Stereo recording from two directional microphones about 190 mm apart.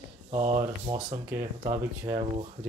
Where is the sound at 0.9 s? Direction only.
25° right (ahead or behind).